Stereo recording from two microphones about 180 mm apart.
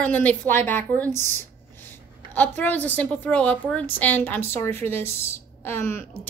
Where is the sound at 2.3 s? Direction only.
10° left (ahead or behind).